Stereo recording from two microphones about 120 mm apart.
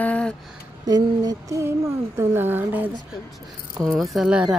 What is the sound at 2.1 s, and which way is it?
Speech, 20° right (ahead or behind).